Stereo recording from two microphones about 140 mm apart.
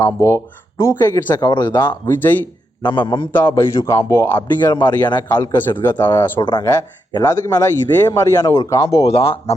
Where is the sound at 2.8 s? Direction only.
35° left (ahead or behind).